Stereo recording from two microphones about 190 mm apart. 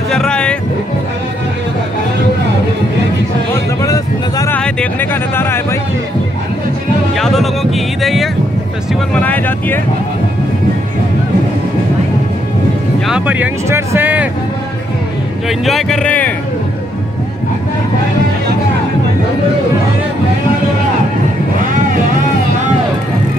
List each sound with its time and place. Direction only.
0.1 s music: 5° left (ahead or behind)
3.8 s a sound: 15° left (ahead or behind)
4.6 s a sound: 5° left (ahead or behind)
7.2 s music: centre (ahead or behind)
9.1 s vehicle: 10° left (ahead or behind)
13.0 s music: 5° right (ahead or behind)
15.4 s speech: centre (ahead or behind)